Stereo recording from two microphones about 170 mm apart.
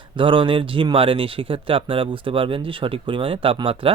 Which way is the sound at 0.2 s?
30° right (ahead or behind).